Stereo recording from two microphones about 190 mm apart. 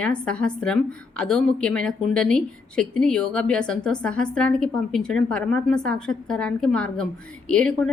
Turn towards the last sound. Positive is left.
turn(degrees=5)  # may be behind; listen again after turning